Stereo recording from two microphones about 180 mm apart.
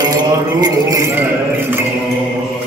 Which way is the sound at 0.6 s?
20° right (ahead or behind).